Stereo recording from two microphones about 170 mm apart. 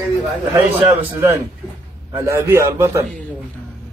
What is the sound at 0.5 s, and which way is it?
A man's voice, 10° right (ahead or behind).